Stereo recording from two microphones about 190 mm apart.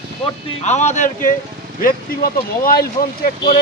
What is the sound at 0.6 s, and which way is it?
Speech, 35° left (ahead or behind).